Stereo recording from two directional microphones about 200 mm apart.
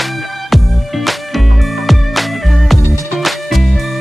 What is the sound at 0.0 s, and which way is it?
Music, centre (ahead or behind).